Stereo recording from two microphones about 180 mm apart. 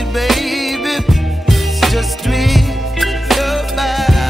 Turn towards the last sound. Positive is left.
turn(degrees=0)  # may be behind; listen again after turning